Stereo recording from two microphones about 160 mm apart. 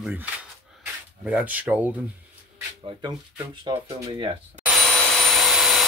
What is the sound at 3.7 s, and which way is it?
Speech, 25° right (ahead or behind).